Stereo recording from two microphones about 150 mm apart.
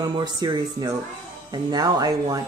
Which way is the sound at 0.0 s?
25° right (ahead or behind).